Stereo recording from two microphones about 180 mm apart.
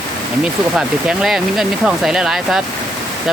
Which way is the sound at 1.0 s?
Centre (ahead or behind).